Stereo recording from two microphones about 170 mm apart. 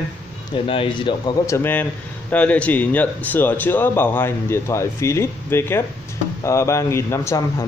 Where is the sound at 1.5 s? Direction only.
15° left (ahead or behind).